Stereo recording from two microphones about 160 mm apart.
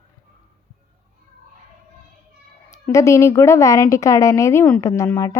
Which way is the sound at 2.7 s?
20° left (ahead or behind).